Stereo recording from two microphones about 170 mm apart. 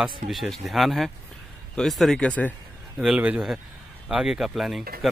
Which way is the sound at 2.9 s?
5° right (ahead or behind).